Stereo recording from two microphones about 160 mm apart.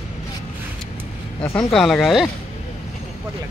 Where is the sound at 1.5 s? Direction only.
15° left (ahead or behind).